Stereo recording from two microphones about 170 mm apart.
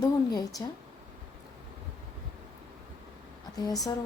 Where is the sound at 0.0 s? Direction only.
20° left (ahead or behind).